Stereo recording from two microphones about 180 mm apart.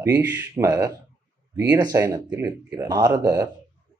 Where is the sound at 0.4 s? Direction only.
20° right (ahead or behind).